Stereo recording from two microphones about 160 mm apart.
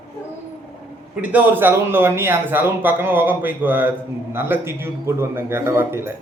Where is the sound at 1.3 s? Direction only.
10° right (ahead or behind).